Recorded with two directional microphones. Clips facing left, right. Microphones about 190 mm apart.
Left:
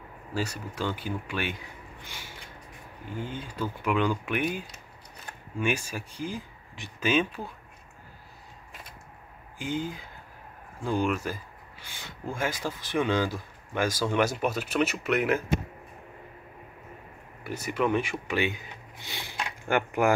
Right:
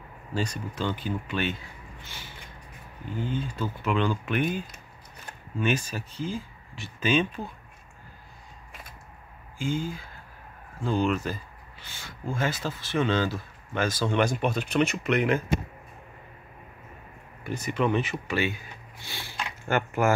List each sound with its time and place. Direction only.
0.3 s speech: 10° left (ahead or behind)
9.6 s speech: 20° left (ahead or behind)
17.4 s speech: 10° left (ahead or behind)
18.2 s a sound: 15° left (ahead or behind)